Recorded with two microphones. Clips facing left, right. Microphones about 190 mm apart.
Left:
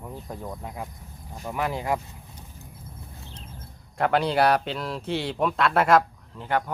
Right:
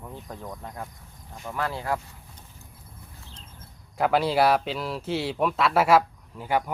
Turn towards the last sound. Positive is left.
turn(degrees=-10)  # may be behind; listen again after turning